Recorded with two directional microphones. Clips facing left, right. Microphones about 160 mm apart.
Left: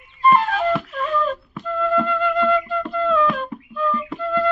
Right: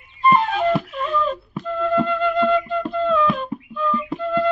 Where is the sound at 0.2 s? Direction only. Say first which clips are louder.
Even; centre (ahead or behind).